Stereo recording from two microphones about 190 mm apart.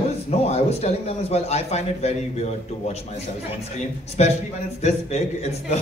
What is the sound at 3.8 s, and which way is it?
A man's voice, 35° left (ahead or behind).